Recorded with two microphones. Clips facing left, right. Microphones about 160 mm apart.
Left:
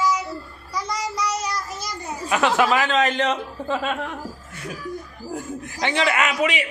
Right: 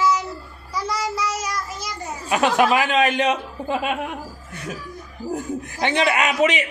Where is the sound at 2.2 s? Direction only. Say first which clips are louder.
Right 1 dB; 20° right (ahead or behind).